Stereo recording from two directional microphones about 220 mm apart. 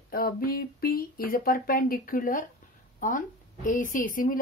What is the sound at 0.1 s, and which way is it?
A woman's voice, 40° left (ahead or behind).